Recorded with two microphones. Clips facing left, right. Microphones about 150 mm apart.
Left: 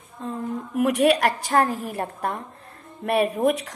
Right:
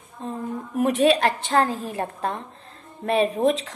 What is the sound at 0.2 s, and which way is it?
A woman's voice, 25° right (ahead or behind).